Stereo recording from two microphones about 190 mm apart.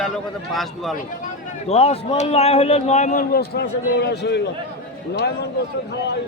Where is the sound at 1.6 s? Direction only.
30° left (ahead or behind); by 4.5 s 60° left (ahead or behind).